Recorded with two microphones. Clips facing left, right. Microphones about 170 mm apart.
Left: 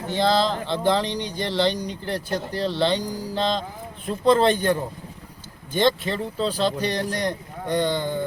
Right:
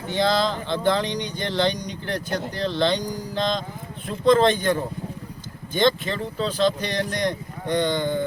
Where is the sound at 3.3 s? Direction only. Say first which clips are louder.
Left 1 dB; 35° left (ahead or behind).